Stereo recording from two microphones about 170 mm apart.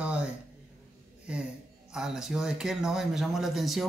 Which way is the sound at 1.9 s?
5° right (ahead or behind).